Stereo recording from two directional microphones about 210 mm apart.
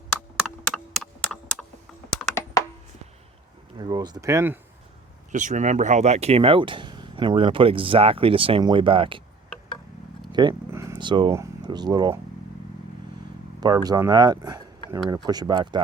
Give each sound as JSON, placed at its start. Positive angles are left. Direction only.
{"t": 0.3, "sound": "computer keyboard", "side_deg": 0}
{"t": 3.8, "sound": "speech", "side_deg": -20}
{"t": 5.3, "sound": "speech", "side_deg": -35}
{"t": 10.3, "sound": "speech", "side_deg": -15}
{"t": 13.6, "sound": "speech", "side_deg": -20}